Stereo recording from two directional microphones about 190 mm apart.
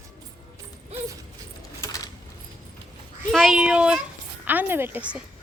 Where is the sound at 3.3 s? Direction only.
Centre (ahead or behind).